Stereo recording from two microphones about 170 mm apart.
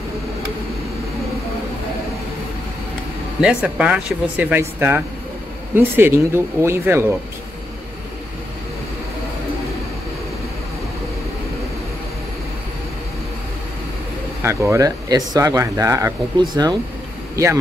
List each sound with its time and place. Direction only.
3.3 s speech: 5° right (ahead or behind)
14.4 s speech: 15° right (ahead or behind)